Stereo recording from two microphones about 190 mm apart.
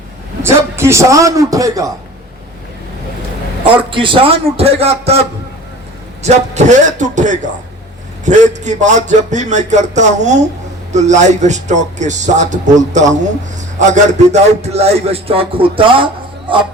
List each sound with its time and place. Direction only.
0.4 s a man's voice: 15° right (ahead or behind)
3.8 s a man's voice: 25° right (ahead or behind)
6.2 s a man's voice: 40° right (ahead or behind)